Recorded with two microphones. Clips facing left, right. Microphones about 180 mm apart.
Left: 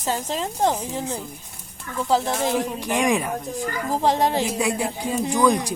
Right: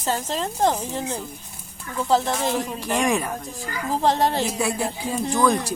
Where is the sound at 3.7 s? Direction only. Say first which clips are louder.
Right 2 dB; 45° left (ahead or behind).